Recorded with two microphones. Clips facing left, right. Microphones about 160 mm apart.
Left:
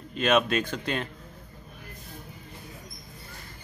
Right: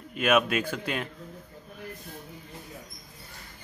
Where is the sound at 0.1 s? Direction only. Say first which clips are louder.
Even; 10° right (ahead or behind).